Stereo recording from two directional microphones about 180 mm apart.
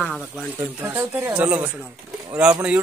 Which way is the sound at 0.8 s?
15° right (ahead or behind).